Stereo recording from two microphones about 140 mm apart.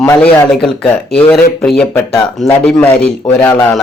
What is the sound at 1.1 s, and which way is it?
Speech, 5° left (ahead or behind).